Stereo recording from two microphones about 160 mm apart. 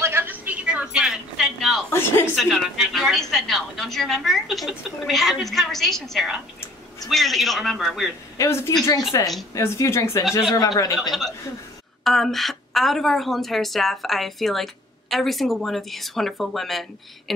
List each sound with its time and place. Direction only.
0.0 s a sound: 15° right (ahead or behind)
1.9 s speech: 15° left (ahead or behind)
2.3 s a woman's voice: centre (ahead or behind)
8.4 s a woman's voice: 15° left (ahead or behind)
11.0 s a woman's voice: centre (ahead or behind)